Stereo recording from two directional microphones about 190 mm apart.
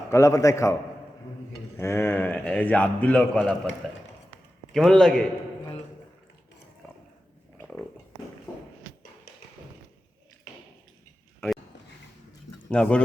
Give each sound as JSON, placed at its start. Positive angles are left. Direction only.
{"t": 0.1, "sound": "a man's voice", "side_deg": 15}
{"t": 11.3, "sound": "a sound", "side_deg": 0}
{"t": 12.7, "sound": "a man's voice", "side_deg": 5}